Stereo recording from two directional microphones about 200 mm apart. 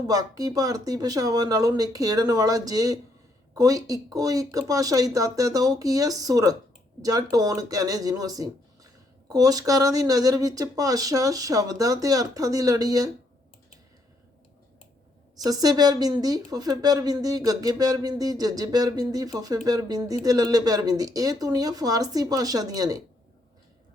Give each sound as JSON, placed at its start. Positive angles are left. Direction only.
{"t": 0.1, "sound": "speech", "side_deg": -20}
{"t": 15.4, "sound": "a woman's voice", "side_deg": -20}